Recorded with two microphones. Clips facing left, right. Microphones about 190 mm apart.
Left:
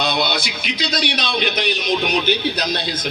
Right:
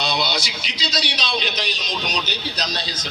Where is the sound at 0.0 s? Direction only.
55° left (ahead or behind).